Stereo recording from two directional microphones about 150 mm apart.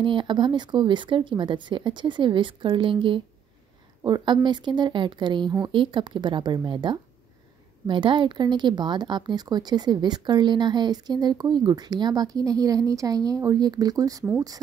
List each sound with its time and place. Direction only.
0.0 s a woman's voice: 30° right (ahead or behind)